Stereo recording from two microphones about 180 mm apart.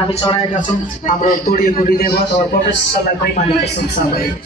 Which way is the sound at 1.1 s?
50° left (ahead or behind).